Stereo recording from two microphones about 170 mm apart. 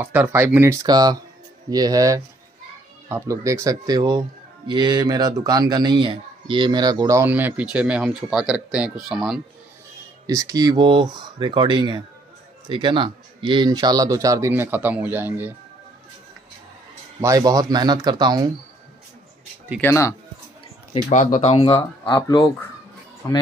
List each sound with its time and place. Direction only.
0.0 s speech: 10° right (ahead or behind)
10.2 s speech: 20° right (ahead or behind)
17.2 s speech: 20° right (ahead or behind)
19.8 s speech: 15° left (ahead or behind)
20.9 s speech: 45° left (ahead or behind); by 23.4 s 20° left (ahead or behind)